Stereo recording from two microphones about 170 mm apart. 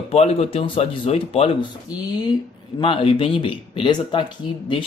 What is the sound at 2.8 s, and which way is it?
Speech, 30° left (ahead or behind).